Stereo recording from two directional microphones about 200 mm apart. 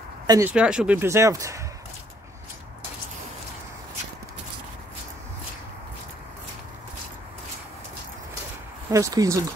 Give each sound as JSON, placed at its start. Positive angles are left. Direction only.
{"t": 0.3, "sound": "speech", "side_deg": -10}
{"t": 8.9, "sound": "speech", "side_deg": -15}